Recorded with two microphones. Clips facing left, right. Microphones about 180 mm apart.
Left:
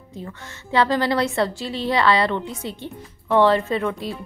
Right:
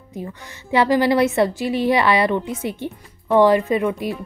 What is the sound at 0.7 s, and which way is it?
A woman's voice, 15° right (ahead or behind).